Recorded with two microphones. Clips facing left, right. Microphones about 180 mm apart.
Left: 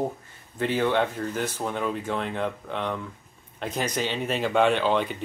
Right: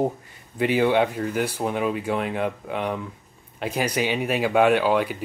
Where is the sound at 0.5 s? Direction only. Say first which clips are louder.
Right 4 dB; 10° right (ahead or behind).